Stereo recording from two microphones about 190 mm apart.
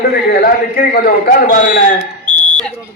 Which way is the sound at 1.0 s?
55° left (ahead or behind).